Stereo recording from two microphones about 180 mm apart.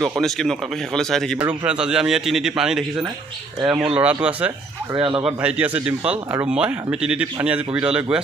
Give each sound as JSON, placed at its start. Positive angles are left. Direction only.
{"t": 0.0, "sound": "speech", "side_deg": 0}
{"t": 4.9, "sound": "speech", "side_deg": -25}
{"t": 5.2, "sound": "speech", "side_deg": -5}